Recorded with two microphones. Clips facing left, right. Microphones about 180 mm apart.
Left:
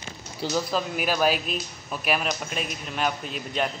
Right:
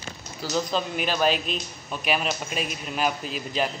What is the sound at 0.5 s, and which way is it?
Speech, 5° left (ahead or behind).